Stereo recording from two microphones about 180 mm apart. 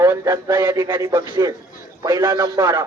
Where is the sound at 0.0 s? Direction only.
15° right (ahead or behind).